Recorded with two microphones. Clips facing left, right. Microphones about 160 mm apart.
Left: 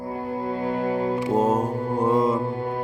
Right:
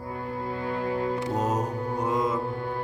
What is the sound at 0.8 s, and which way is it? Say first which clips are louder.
Music: left 3 dB; 30° left (ahead or behind).